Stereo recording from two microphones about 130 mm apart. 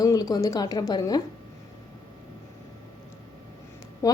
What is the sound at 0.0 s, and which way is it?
Speech, 25° left (ahead or behind).